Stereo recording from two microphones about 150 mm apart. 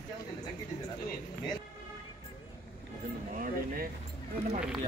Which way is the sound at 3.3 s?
70° right (ahead or behind).